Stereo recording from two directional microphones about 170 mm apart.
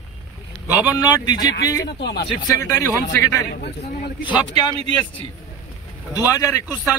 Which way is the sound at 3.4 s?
75° left (ahead or behind).